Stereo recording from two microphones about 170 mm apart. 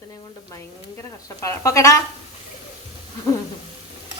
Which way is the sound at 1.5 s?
20° left (ahead or behind).